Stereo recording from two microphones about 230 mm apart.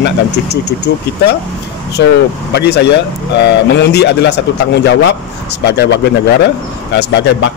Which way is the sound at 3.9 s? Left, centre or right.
Left.